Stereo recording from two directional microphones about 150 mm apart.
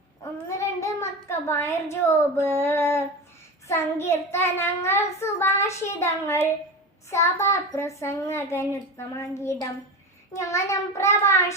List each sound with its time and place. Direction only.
0.4 s child singing: 20° left (ahead or behind)
2.6 s a child's voice: 15° left (ahead or behind)